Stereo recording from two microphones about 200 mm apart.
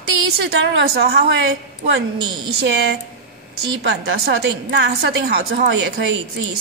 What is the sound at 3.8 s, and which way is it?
A woman's voice, 60° right (ahead or behind).